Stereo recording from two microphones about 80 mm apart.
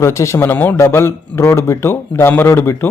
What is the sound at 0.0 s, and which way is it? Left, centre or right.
A man's voice, left.